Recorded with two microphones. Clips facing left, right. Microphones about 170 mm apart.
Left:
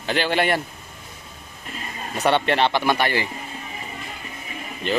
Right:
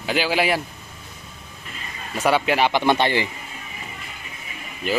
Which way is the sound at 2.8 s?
20° right (ahead or behind).